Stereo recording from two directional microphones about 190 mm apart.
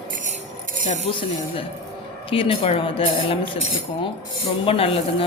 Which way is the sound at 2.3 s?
30° left (ahead or behind).